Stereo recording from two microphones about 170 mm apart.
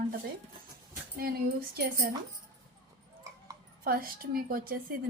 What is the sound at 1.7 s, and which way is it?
Speech, 70° right (ahead or behind).